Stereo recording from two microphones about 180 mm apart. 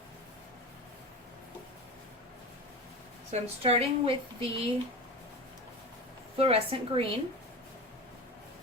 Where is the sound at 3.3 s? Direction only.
35° right (ahead or behind).